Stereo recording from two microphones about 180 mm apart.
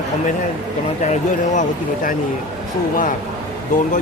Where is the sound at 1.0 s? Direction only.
40° left (ahead or behind).